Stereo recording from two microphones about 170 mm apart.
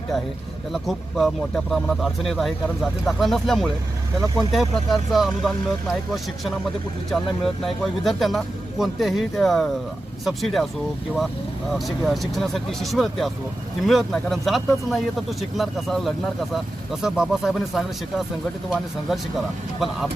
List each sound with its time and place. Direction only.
0.7 s speech: centre (ahead or behind)
7.1 s speech: centre (ahead or behind)
11.7 s speech: centre (ahead or behind)